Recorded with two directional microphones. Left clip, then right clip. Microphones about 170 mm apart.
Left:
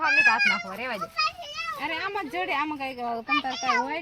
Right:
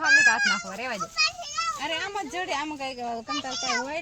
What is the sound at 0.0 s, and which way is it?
Speech, 75° right (ahead or behind).